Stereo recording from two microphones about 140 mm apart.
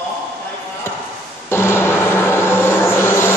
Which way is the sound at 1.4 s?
20° left (ahead or behind).